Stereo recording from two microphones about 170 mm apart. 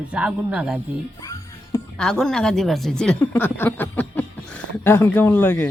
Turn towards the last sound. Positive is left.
turn(degrees=10)  # may be behind; listen again after turning